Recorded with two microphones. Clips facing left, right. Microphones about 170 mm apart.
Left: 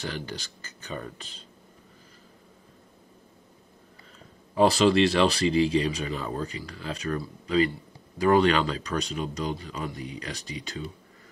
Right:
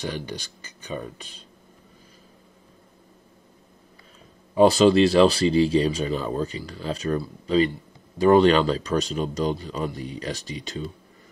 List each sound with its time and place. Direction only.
0.0 s speech: 15° right (ahead or behind)
4.7 s speech: 30° right (ahead or behind)